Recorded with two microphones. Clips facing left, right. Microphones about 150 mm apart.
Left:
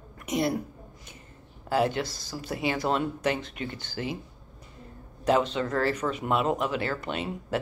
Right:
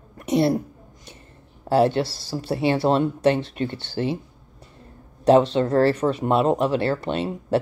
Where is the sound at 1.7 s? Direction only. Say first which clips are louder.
Right 7 dB; 30° right (ahead or behind).